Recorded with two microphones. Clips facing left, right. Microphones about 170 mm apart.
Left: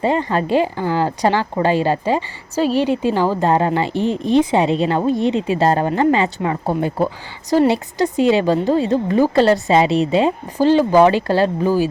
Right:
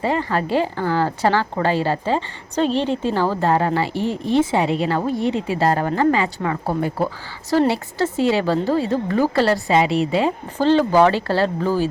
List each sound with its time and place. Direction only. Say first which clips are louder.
0.0 s a woman's voice: left 3 dB; 20° left (ahead or behind)